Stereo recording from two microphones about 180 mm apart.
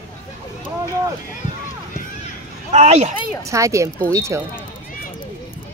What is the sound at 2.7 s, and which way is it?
Speech, 40° right (ahead or behind).